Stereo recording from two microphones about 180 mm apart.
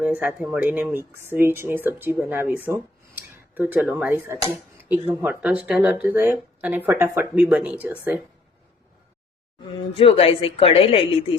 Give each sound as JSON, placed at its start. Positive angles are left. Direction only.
{"t": 0.0, "sound": "speech", "side_deg": -5}
{"t": 9.9, "sound": "a woman's voice", "side_deg": 30}